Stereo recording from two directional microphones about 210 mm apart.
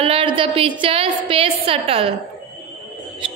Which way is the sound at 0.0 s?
25° right (ahead or behind).